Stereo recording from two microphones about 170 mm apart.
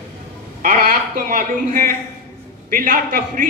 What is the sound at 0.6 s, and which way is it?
A man's voice, 55° right (ahead or behind).